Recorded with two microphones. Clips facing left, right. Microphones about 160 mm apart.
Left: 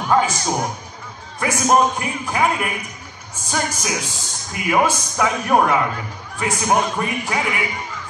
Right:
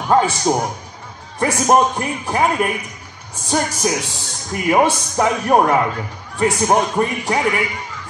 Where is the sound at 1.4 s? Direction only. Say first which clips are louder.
Right 2 dB; 35° right (ahead or behind).